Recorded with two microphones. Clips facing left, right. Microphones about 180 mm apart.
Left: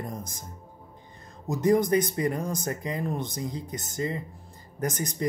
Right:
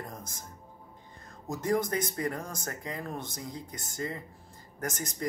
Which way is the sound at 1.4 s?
20° left (ahead or behind).